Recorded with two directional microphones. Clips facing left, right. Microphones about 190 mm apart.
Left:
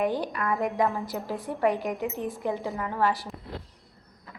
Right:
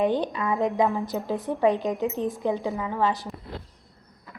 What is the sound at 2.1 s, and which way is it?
A woman's voice, 20° right (ahead or behind).